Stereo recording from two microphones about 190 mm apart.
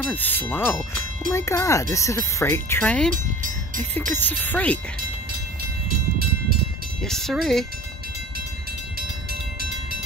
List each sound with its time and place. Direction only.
0.1 s speech: 10° left (ahead or behind)
3.1 s music: 45° right (ahead or behind)
3.9 s speech: 10° left (ahead or behind)
7.0 s speech: centre (ahead or behind)
9.3 s train: 55° right (ahead or behind)